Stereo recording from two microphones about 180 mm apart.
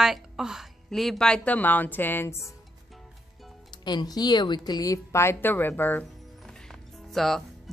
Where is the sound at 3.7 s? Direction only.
25° left (ahead or behind).